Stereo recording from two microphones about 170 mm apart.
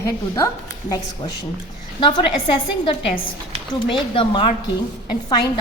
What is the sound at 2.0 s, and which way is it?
A woman's voice, 30° left (ahead or behind).